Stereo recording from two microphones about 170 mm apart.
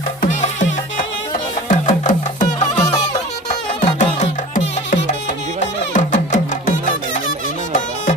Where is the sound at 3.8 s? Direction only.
45° left (ahead or behind).